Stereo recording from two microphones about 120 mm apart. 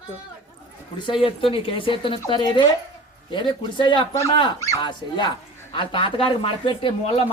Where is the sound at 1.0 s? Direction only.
45° left (ahead or behind).